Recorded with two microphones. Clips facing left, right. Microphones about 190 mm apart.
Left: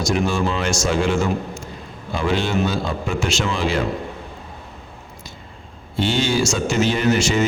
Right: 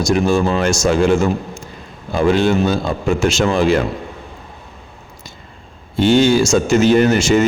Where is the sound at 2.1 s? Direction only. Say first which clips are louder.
Right 7 dB; 50° right (ahead or behind).